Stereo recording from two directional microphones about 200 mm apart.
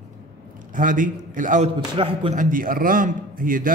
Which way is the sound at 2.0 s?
25° right (ahead or behind).